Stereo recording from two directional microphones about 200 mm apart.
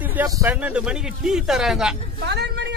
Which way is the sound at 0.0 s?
10° right (ahead or behind).